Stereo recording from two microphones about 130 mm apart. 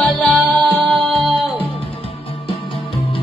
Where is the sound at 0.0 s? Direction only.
Centre (ahead or behind).